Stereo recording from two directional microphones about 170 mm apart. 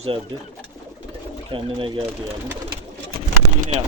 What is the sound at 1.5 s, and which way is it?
Speech, 30° right (ahead or behind).